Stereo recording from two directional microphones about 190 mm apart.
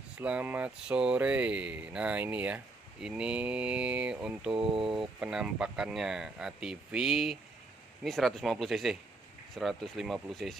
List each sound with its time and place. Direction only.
0.2 s speech: 10° right (ahead or behind)
4.6 s speech: 30° right (ahead or behind)
4.8 s speech: 5° right (ahead or behind)